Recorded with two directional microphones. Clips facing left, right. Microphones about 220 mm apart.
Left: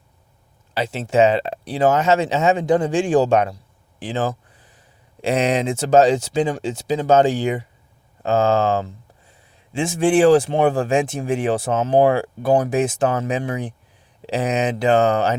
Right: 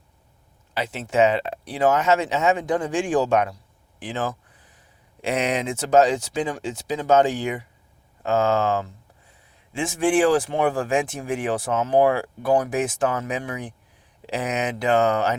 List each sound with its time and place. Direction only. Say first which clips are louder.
0.7 s speech: left 5 dB; 30° left (ahead or behind)
4.0 s a sound: left 4 dB; 30° left (ahead or behind)
5.2 s speech: left 5 dB; 30° left (ahead or behind)